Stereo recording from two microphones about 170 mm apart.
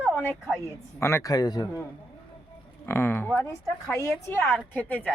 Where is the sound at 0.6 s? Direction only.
15° left (ahead or behind).